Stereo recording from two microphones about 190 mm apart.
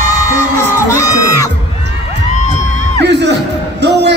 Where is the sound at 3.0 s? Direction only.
65° right (ahead or behind).